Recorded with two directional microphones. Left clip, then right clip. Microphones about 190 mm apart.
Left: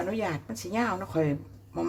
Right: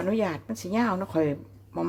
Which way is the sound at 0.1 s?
25° right (ahead or behind).